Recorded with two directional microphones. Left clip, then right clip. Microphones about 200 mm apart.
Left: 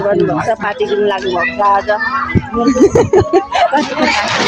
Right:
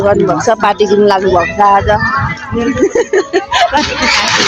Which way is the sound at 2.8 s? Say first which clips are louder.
Left 2 dB; 55° left (ahead or behind).